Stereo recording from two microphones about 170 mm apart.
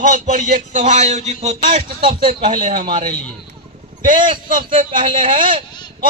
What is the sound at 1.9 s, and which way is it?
A man's voice, 60° right (ahead or behind).